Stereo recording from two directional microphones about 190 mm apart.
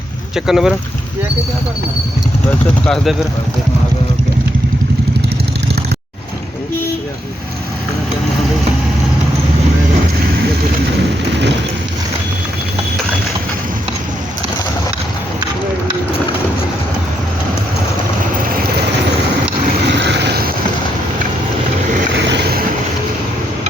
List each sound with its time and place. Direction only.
0.3 s speech: centre (ahead or behind)
2.8 s speech: centre (ahead or behind)
19.9 s vehicle: 65° right (ahead or behind)
22.1 s vehicle: 70° right (ahead or behind)